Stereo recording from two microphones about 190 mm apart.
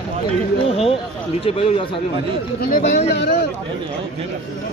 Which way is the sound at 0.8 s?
30° left (ahead or behind).